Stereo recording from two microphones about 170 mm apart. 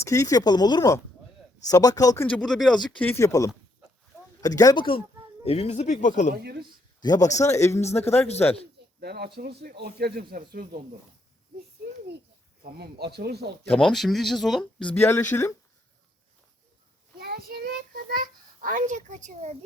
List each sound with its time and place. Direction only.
0.0 s speech: 15° left (ahead or behind)
2.2 s speech: 5° left (ahead or behind); by 6.3 s 45° left (ahead or behind)
6.3 s speech: 70° right (ahead or behind)
7.0 s a man's voice: 25° left (ahead or behind)
9.0 s speech: 70° right (ahead or behind)
12.6 s speech: 65° right (ahead or behind)
13.7 s speech: 5° left (ahead or behind)
17.2 s child singing: 65° right (ahead or behind)
18.1 s a child's voice: 55° right (ahead or behind)